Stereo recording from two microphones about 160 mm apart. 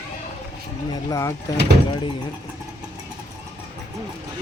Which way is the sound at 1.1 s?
20° left (ahead or behind).